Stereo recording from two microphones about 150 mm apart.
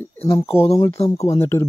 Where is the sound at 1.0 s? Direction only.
45° left (ahead or behind).